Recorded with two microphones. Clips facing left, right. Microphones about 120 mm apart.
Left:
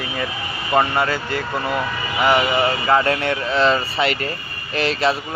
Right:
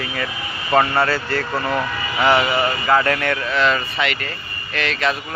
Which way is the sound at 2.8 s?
25° left (ahead or behind).